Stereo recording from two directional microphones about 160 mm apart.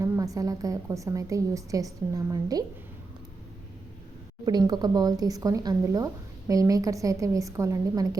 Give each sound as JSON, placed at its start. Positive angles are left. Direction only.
{"t": 0.0, "sound": "a woman's voice", "side_deg": -20}
{"t": 4.4, "sound": "a woman's voice", "side_deg": -25}